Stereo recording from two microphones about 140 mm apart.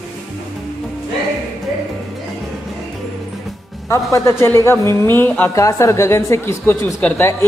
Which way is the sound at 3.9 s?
20° left (ahead or behind).